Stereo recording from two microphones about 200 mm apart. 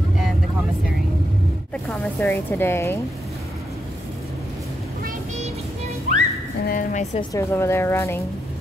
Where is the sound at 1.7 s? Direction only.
5° left (ahead or behind).